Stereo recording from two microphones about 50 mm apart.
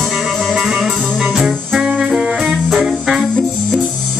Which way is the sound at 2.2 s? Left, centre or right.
Centre.